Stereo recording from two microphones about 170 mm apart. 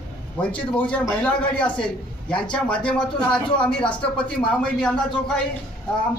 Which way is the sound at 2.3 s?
30° left (ahead or behind).